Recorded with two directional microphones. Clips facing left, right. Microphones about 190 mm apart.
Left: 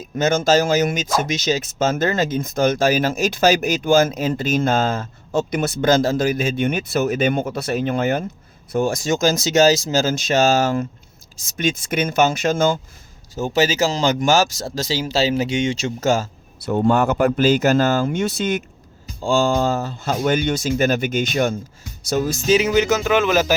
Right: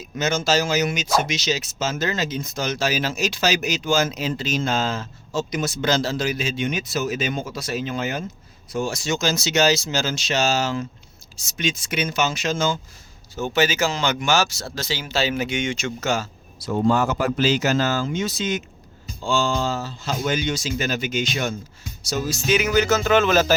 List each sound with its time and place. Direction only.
0.0 s speech: 50° left (ahead or behind)
13.3 s speech: 40° left (ahead or behind)
22.4 s speech: 30° left (ahead or behind); by 23.6 s 10° left (ahead or behind)